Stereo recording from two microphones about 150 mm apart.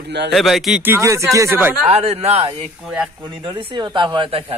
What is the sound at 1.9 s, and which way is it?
Speech, 45° right (ahead or behind).